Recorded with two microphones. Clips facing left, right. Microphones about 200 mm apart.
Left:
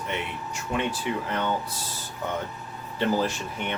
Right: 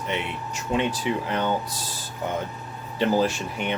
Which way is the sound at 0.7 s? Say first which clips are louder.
Right 4 dB; 20° right (ahead or behind).